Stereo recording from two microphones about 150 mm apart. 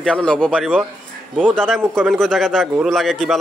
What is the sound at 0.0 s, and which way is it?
A man's voice, 5° left (ahead or behind).